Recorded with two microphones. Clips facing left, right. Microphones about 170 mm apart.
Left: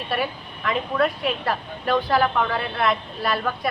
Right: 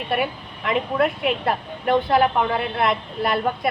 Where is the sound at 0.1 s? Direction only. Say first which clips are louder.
Right 2 dB; 20° right (ahead or behind).